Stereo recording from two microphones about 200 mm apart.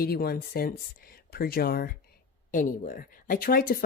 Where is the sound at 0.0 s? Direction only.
50° left (ahead or behind).